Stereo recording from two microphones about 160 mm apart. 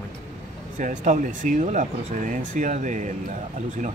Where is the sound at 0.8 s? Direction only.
55° right (ahead or behind).